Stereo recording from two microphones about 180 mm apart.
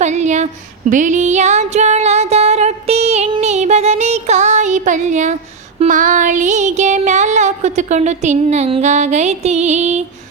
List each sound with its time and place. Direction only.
0.0 s speech: 40° right (ahead or behind)
0.9 s a sound: 45° right (ahead or behind)
5.8 s music: 45° right (ahead or behind)